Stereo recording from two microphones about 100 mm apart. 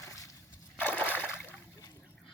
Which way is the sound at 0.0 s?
30° left (ahead or behind).